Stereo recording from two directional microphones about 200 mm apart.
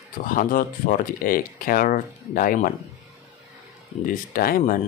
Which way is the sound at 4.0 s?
45° left (ahead or behind).